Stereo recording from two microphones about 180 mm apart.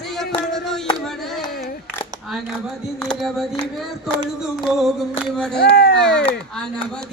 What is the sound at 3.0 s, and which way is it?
Music, centre (ahead or behind).